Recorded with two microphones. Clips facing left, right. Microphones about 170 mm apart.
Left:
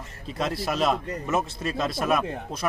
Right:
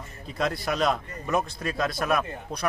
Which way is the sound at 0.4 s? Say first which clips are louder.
Even; centre (ahead or behind).